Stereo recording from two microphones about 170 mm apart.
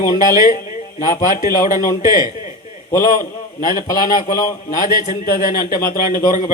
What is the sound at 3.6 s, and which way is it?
A man's voice, 55° left (ahead or behind).